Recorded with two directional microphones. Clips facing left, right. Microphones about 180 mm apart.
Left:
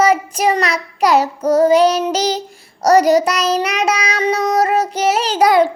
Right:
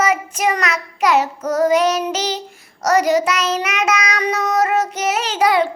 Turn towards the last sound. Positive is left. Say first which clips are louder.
# left 4 dB
turn(degrees=40)  # may be behind; listen again after turning